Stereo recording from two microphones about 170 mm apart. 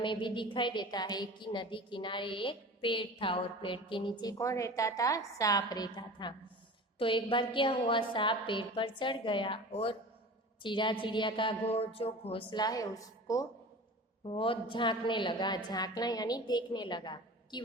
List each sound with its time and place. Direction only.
0.0 s a woman's voice: 30° left (ahead or behind)
14.3 s a woman's voice: 30° left (ahead or behind)